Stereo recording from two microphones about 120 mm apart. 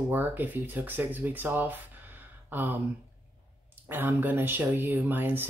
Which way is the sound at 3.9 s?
15° right (ahead or behind).